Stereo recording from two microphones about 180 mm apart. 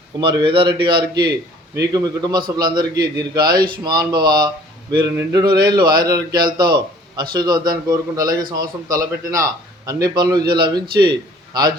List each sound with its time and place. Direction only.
0.2 s a man's voice: 30° right (ahead or behind)